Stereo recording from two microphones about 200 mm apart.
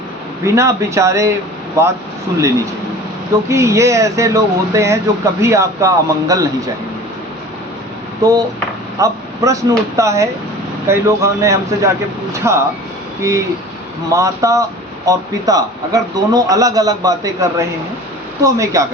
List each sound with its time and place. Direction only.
0.4 s speech: 15° right (ahead or behind)
3.5 s speech: 15° right (ahead or behind)
8.2 s speech: 20° right (ahead or behind)
14.1 s speech: 15° right (ahead or behind)